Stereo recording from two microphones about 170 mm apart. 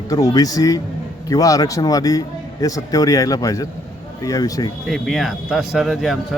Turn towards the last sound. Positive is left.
turn(degrees=0)  # may be behind; listen again after turning